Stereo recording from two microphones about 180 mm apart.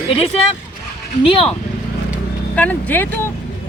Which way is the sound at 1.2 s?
30° left (ahead or behind).